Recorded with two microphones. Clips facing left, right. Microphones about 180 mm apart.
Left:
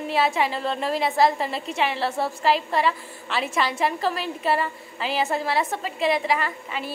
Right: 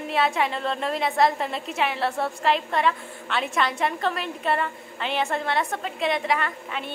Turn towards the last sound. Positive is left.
turn(degrees=0)  # may be behind; listen again after turning